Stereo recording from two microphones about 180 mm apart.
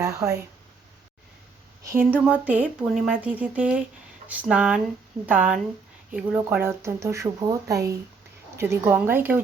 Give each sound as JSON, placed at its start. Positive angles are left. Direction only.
{"t": 0.0, "sound": "speech", "side_deg": -20}
{"t": 1.8, "sound": "speech", "side_deg": -15}